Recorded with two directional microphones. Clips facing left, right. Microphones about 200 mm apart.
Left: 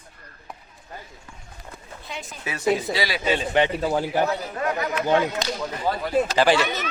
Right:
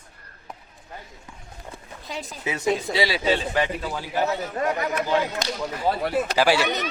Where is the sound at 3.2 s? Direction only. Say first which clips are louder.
Left 2 dB; 20° left (ahead or behind).